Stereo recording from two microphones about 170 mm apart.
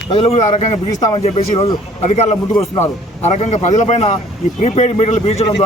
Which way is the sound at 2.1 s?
40° left (ahead or behind).